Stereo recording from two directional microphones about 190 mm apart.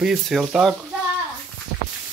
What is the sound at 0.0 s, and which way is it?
Speech, centre (ahead or behind).